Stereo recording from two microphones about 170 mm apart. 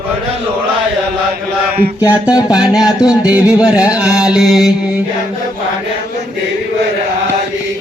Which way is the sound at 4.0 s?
5° right (ahead or behind).